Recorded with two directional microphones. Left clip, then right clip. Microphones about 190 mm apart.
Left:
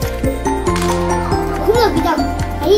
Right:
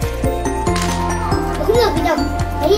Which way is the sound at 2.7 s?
10° left (ahead or behind).